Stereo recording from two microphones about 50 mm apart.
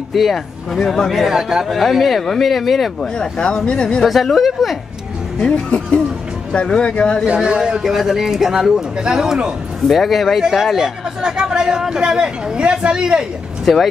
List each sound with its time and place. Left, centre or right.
0.1 s speech: centre
1.1 s speech: centre
3.0 s speech: centre
4.0 s speech: centre
5.7 s speech: left
7.2 s speech: centre
9.8 s speech: centre